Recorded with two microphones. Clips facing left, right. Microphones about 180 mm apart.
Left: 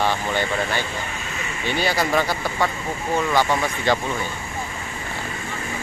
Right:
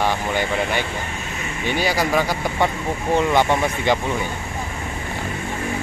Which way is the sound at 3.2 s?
20° right (ahead or behind).